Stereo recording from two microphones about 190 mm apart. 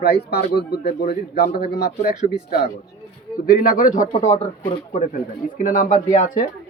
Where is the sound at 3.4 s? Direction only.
50° left (ahead or behind).